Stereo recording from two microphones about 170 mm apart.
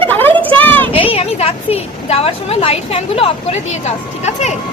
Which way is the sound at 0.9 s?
35° left (ahead or behind).